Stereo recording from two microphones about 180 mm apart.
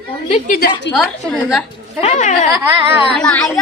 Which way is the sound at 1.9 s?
40° left (ahead or behind).